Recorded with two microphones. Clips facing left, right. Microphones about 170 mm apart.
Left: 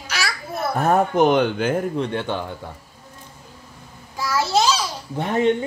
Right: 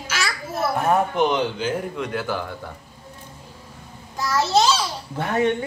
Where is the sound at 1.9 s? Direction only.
30° left (ahead or behind).